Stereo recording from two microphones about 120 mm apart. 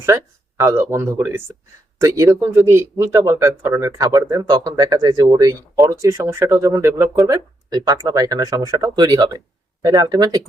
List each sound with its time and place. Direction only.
0.0 s speech: 25° right (ahead or behind)